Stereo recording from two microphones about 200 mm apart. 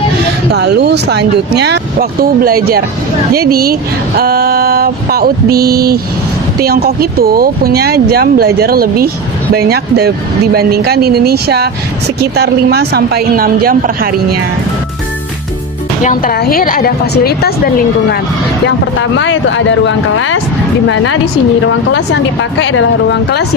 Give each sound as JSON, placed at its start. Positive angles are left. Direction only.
{"t": 0.5, "sound": "speech", "side_deg": -55}
{"t": 16.0, "sound": "a woman's voice", "side_deg": 45}
{"t": 19.1, "sound": "a woman's voice", "side_deg": 70}
{"t": 22.6, "sound": "speech", "side_deg": 75}